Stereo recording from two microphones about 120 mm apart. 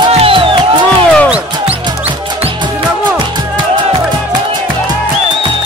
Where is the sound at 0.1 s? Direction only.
50° right (ahead or behind).